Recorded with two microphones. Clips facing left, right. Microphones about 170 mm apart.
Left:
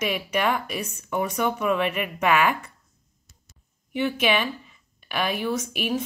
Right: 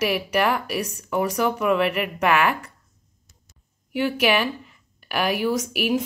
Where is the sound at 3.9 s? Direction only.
5° right (ahead or behind).